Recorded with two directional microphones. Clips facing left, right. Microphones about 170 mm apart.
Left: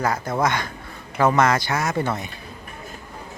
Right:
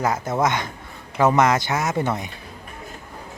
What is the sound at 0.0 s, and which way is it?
A woman's voice, 20° right (ahead or behind).